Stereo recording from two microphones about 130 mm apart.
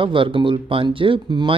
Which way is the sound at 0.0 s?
40° right (ahead or behind).